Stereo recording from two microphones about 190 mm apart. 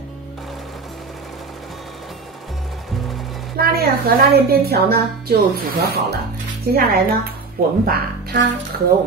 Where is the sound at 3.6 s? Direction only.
55° right (ahead or behind).